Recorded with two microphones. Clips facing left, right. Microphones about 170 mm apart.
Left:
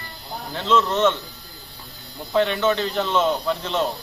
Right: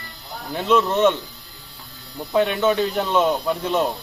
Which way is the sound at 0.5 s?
15° right (ahead or behind).